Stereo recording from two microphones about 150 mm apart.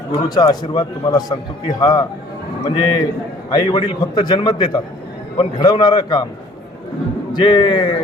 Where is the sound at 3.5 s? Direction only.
30° left (ahead or behind).